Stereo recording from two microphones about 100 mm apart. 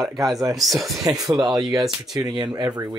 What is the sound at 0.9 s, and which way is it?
Speech, 35° right (ahead or behind).